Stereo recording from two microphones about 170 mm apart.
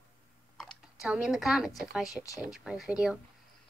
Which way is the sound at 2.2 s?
20° left (ahead or behind).